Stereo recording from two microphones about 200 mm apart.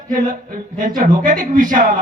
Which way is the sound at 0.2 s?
40° right (ahead or behind).